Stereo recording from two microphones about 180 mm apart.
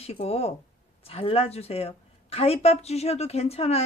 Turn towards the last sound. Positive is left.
turn(degrees=35)  # may be behind; listen again after turning